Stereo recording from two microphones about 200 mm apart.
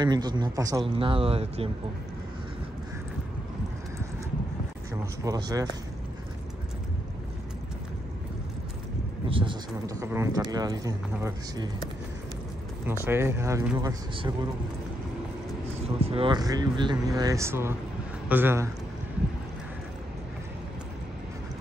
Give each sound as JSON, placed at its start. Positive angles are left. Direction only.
{"t": 0.0, "sound": "speech", "side_deg": -20}
{"t": 5.2, "sound": "speech", "side_deg": -15}
{"t": 9.3, "sound": "speech", "side_deg": -25}
{"t": 13.0, "sound": "speech", "side_deg": -10}
{"t": 15.8, "sound": "speech", "side_deg": -30}